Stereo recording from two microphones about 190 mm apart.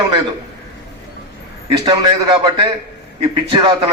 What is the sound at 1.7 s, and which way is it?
A man's voice, 20° right (ahead or behind).